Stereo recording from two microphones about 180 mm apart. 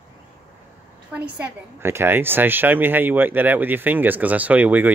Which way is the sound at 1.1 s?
10° right (ahead or behind).